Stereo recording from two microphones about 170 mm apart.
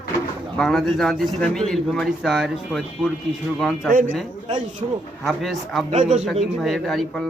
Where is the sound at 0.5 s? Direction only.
Centre (ahead or behind).